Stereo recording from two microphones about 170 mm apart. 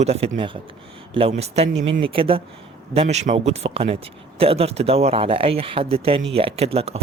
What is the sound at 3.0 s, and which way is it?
Speech, 45° right (ahead or behind).